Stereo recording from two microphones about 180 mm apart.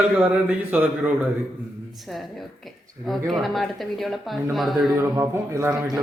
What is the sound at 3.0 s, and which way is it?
Speech, centre (ahead or behind).